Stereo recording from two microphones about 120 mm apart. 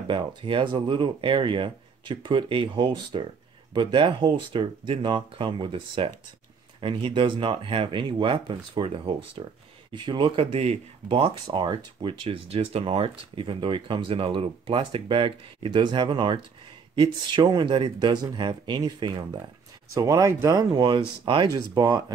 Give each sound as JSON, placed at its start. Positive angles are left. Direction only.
{"t": 0.1, "sound": "speech", "side_deg": -45}
{"t": 11.4, "sound": "speech", "side_deg": -40}
{"t": 21.7, "sound": "speech", "side_deg": -30}